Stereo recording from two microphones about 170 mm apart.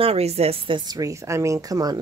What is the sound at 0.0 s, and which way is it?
A woman's voice, 35° right (ahead or behind).